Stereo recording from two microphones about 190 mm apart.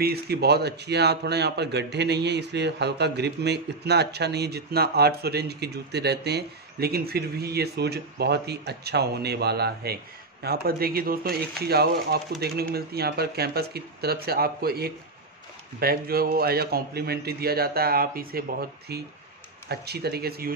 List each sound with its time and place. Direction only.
0.0 s a man's voice: 55° right (ahead or behind)